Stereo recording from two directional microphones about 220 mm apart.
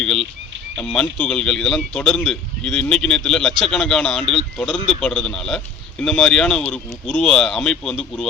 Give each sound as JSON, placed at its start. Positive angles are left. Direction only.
{"t": 0.0, "sound": "a man's voice", "side_deg": 5}